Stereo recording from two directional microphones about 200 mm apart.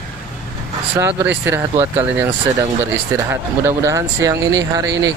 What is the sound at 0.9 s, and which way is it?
Speech, 10° right (ahead or behind).